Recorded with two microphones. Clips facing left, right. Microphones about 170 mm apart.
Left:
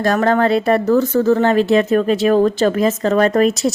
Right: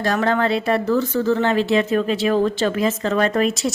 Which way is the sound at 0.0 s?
45° left (ahead or behind).